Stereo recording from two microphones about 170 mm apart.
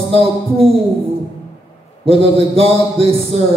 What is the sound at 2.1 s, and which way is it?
Speech, 35° right (ahead or behind).